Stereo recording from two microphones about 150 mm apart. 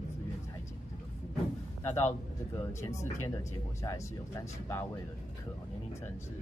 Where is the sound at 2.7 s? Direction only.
20° left (ahead or behind).